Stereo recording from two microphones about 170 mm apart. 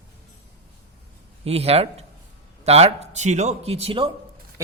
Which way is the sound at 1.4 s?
35° right (ahead or behind).